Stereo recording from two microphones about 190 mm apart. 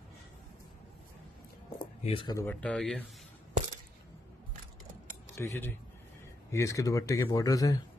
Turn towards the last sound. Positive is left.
turn(degrees=20)  # may be behind; listen again after turning